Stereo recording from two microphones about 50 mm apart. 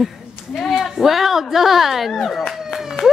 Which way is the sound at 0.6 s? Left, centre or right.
Centre.